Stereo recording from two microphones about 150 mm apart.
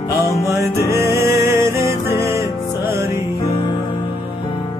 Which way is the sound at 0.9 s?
20° right (ahead or behind).